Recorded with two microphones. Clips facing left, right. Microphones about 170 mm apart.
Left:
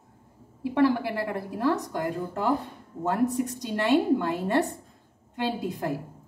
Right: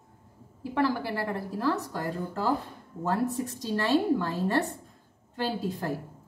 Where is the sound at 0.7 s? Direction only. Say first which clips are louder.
Left 4 dB; 20° left (ahead or behind).